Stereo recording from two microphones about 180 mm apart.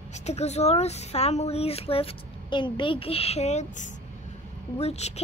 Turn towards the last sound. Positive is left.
turn(degrees=35)  # may be behind; listen again after turning